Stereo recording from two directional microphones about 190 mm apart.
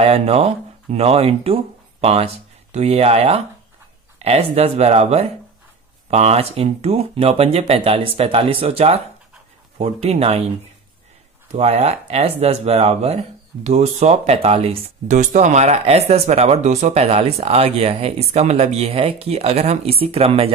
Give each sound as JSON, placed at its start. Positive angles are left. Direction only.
{"t": 0.0, "sound": "speech", "side_deg": -30}
{"t": 11.5, "sound": "speech", "side_deg": -35}